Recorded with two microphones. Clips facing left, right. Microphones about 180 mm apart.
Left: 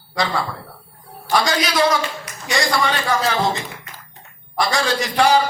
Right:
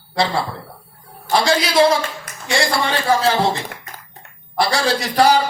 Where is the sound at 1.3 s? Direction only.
30° right (ahead or behind).